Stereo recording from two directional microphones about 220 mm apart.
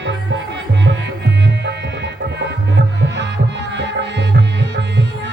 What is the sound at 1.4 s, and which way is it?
Music, 50° right (ahead or behind).